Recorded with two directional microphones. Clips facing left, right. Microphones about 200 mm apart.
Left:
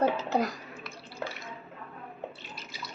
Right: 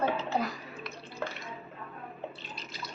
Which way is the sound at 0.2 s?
40° left (ahead or behind).